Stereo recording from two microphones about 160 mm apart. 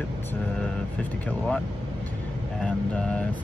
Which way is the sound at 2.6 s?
5° left (ahead or behind).